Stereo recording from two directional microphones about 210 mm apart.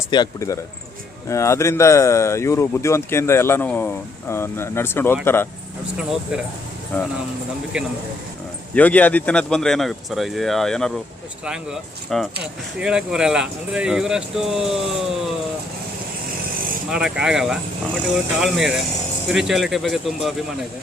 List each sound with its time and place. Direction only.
0.1 s speech: 15° left (ahead or behind)
6.0 s speech: 5° right (ahead or behind)
6.9 s speech: 10° left (ahead or behind)
8.7 s speech: 5° left (ahead or behind)
16.9 s speech: 5° right (ahead or behind)